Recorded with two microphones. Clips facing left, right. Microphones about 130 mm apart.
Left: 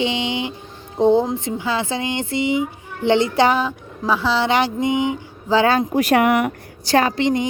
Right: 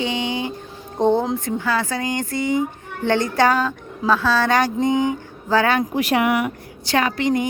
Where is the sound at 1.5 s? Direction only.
15° left (ahead or behind).